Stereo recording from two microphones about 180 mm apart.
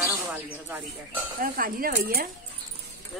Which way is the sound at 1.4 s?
55° right (ahead or behind).